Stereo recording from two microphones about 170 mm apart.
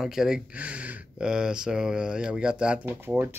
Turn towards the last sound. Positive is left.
turn(degrees=-10)  # may be behind; listen again after turning